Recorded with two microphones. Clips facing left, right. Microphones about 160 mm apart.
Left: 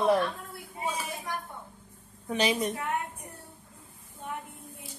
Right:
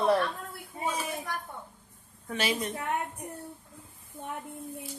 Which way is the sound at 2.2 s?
20° left (ahead or behind).